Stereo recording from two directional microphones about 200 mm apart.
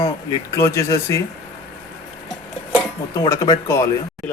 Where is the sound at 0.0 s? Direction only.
15° left (ahead or behind).